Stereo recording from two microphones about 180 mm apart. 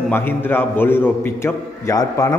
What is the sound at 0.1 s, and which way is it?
A man's voice, 10° left (ahead or behind).